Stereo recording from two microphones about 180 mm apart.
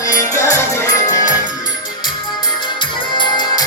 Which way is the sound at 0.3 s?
40° left (ahead or behind).